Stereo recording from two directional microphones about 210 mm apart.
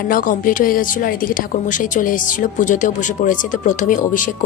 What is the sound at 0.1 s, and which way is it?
A woman's voice, 40° left (ahead or behind).